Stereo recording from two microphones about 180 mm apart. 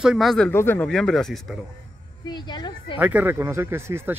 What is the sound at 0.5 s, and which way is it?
Speech, 10° left (ahead or behind).